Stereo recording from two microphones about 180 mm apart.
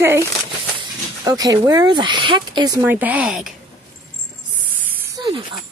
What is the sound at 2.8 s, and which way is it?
Speech, 10° right (ahead or behind).